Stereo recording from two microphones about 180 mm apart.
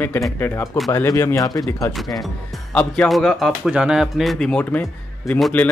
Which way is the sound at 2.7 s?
5° left (ahead or behind).